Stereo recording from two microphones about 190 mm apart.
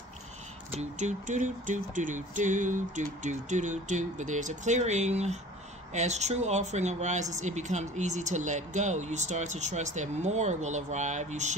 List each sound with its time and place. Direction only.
0.7 s speech: 40° right (ahead or behind)